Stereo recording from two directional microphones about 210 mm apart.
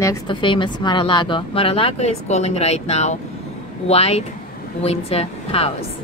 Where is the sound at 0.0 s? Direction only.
20° left (ahead or behind).